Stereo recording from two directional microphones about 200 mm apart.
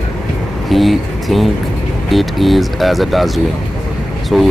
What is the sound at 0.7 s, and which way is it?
Speech, centre (ahead or behind).